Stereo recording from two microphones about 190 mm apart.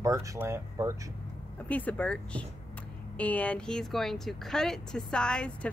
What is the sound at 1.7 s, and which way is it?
A woman's voice, 10° left (ahead or behind).